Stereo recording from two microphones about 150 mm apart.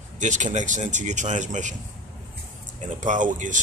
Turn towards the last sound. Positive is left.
turn(degrees=-60)  # may be behind; listen again after turning